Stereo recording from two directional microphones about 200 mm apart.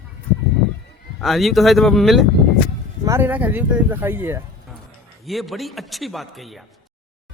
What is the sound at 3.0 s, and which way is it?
Speech, 10° right (ahead or behind).